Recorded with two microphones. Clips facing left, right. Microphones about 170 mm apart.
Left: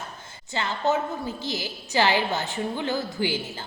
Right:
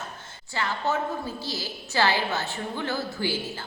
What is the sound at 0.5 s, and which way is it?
A woman's voice, 20° left (ahead or behind).